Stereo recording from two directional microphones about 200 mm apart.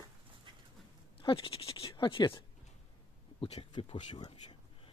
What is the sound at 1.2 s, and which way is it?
A man's voice, 25° left (ahead or behind).